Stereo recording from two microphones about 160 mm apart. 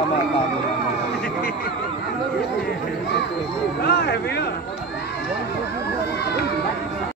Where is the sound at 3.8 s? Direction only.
90° left.